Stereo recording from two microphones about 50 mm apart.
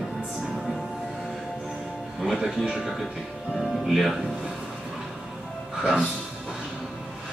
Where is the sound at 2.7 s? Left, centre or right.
Centre.